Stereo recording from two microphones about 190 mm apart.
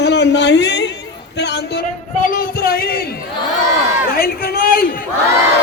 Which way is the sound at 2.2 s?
50° left (ahead or behind).